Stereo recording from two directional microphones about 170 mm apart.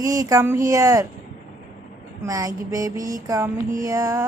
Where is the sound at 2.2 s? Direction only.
20° right (ahead or behind).